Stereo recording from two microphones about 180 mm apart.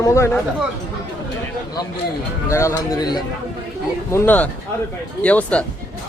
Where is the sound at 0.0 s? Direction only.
15° left (ahead or behind).